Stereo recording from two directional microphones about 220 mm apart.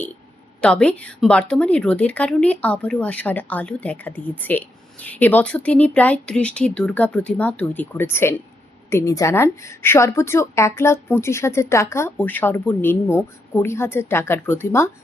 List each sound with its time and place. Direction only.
0.6 s a woman's voice: 5° left (ahead or behind)